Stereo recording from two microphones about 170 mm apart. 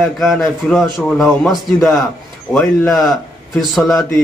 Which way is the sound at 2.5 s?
15° left (ahead or behind).